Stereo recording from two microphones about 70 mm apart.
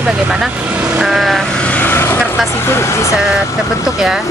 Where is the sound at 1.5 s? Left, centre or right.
Centre.